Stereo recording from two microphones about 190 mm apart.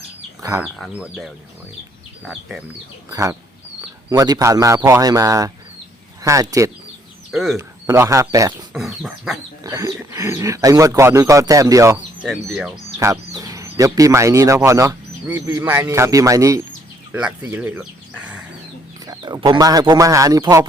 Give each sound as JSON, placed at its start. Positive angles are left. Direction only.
{"t": 0.6, "sound": "speech", "side_deg": -5}
{"t": 3.1, "sound": "speech", "side_deg": -20}
{"t": 7.3, "sound": "speech", "side_deg": 0}
{"t": 7.5, "sound": "speech", "side_deg": -15}
{"t": 8.7, "sound": "speech", "side_deg": 0}
{"t": 9.6, "sound": "speech", "side_deg": -15}
{"t": 12.2, "sound": "speech", "side_deg": 0}
{"t": 13.0, "sound": "speech", "side_deg": -15}
{"t": 19.0, "sound": "speech", "side_deg": -20}